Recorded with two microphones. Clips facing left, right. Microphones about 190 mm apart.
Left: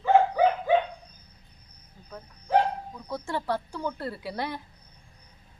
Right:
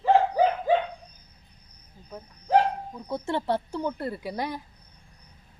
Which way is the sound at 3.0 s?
25° right (ahead or behind).